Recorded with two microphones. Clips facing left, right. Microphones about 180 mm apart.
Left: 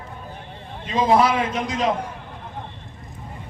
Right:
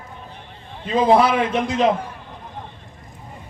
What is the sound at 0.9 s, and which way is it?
Speech, 30° right (ahead or behind).